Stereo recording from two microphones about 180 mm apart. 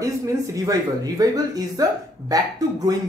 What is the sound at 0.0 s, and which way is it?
A woman's voice, 20° right (ahead or behind).